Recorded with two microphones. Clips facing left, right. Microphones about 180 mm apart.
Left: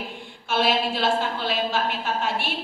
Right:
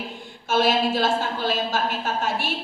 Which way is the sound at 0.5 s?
45° right (ahead or behind).